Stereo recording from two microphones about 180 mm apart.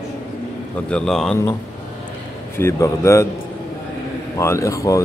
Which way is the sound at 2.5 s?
15° left (ahead or behind).